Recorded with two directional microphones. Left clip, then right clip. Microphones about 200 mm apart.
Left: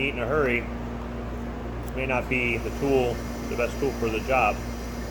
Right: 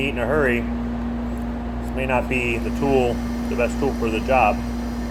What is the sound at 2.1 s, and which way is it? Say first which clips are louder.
Speech: right 4 dB; 15° right (ahead or behind).